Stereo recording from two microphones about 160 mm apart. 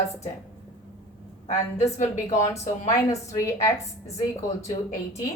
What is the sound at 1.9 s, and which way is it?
Speech, 50° left (ahead or behind).